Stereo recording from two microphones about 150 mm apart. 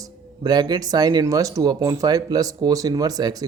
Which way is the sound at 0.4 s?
25° right (ahead or behind).